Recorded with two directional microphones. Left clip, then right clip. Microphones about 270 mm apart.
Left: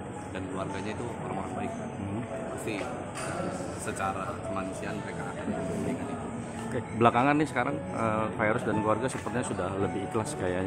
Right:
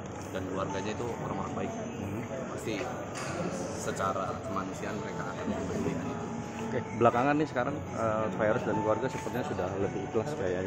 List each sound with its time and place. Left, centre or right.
6.7 s a man's voice: left